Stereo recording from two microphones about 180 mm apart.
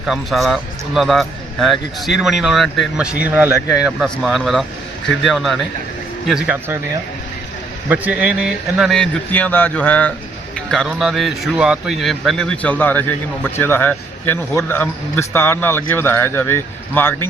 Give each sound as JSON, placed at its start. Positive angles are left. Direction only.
{"t": 0.0, "sound": "a man's voice", "side_deg": 0}
{"t": 7.9, "sound": "a man's voice", "side_deg": -10}